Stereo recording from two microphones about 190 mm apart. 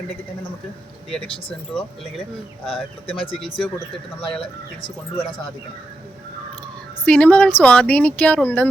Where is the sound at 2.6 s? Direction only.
30° left (ahead or behind).